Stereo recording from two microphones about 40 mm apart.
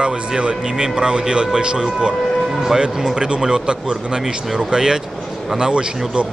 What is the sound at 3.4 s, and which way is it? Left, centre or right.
A man's voice, centre.